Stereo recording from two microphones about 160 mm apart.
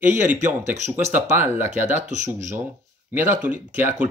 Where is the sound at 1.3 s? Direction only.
15° right (ahead or behind).